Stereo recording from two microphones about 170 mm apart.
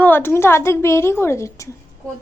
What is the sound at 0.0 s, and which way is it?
A woman's voice, 10° left (ahead or behind).